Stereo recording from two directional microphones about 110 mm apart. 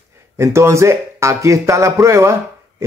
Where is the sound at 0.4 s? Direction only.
25° right (ahead or behind).